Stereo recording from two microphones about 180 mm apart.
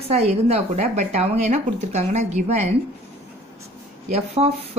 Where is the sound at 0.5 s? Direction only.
35° right (ahead or behind).